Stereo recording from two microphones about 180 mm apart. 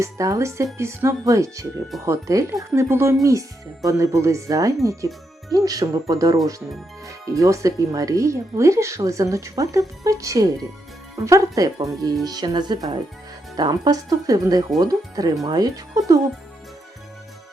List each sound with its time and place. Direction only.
0.0 s speech: 15° right (ahead or behind)